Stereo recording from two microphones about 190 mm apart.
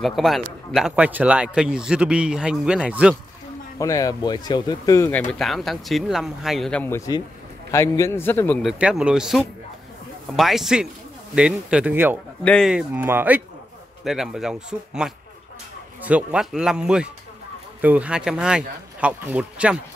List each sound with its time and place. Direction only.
0.0 s speech: centre (ahead or behind)
3.7 s speech: 15° left (ahead or behind)
5.3 s a man's voice: centre (ahead or behind)
8.6 s speech: 5° right (ahead or behind)
12.4 s speech: centre (ahead or behind)